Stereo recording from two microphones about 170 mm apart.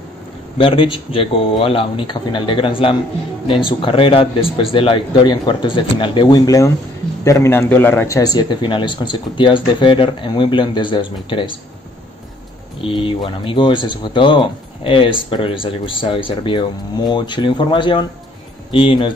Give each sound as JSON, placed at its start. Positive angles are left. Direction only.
{"t": 0.6, "sound": "speech", "side_deg": 30}
{"t": 12.8, "sound": "speech", "side_deg": 30}